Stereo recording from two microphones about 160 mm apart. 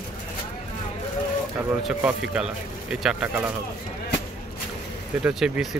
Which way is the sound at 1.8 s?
5° right (ahead or behind).